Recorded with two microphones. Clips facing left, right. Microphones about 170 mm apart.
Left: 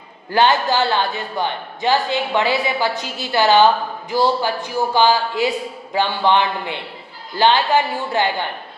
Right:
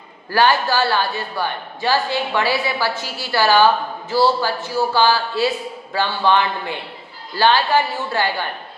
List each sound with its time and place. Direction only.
0.3 s a man's voice: 20° left (ahead or behind)